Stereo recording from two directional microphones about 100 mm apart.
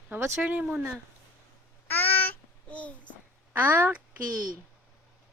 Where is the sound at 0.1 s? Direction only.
25° right (ahead or behind).